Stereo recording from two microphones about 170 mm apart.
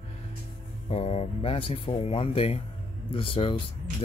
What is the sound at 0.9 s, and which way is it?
Speech, 35° left (ahead or behind).